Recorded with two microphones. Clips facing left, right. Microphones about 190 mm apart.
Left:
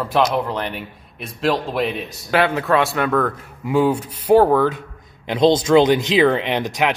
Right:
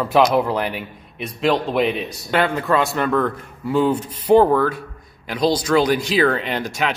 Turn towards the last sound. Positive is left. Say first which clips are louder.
# left 3 dB
turn(degrees=15)  # may be behind; listen again after turning